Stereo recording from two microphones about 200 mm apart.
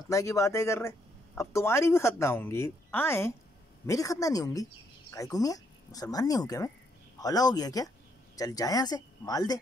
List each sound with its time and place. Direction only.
0.1 s speech: 15° left (ahead or behind)